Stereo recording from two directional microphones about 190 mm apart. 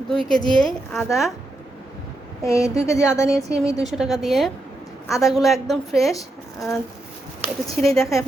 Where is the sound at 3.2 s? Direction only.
5° right (ahead or behind).